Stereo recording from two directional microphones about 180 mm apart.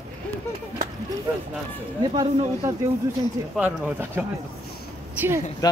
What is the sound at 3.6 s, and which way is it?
Speech, 10° right (ahead or behind).